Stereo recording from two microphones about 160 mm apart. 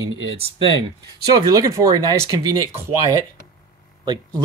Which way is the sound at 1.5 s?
20° right (ahead or behind).